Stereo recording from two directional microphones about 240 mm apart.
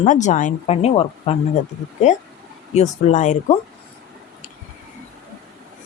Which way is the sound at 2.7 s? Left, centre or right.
Left.